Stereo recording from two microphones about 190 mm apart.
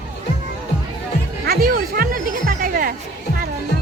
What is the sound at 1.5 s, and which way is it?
Music, 50° right (ahead or behind).